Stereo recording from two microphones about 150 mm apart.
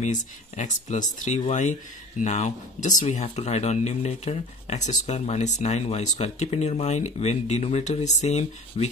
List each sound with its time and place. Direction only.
0.0 s speech: 55° left (ahead or behind)